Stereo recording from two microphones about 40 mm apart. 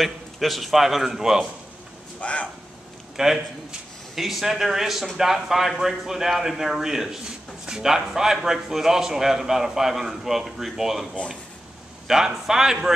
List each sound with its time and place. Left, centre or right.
0.0 s a man's voice: centre
2.1 s speech: left
3.2 s speech: centre
12.1 s speech: centre